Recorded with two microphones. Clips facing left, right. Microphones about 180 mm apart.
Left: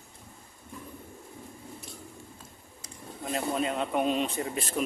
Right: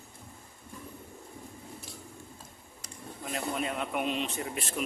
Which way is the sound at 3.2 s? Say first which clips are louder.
Left 4 dB; 30° left (ahead or behind).